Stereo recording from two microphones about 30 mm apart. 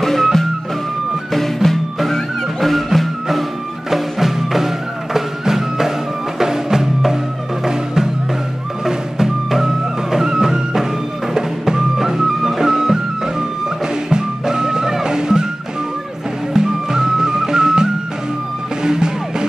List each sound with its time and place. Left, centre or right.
0.0 s music: centre
14.0 s music: right
16.5 s music: centre